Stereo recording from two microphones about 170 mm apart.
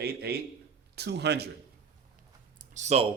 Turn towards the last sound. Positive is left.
turn(degrees=-45)  # may be behind; listen again after turning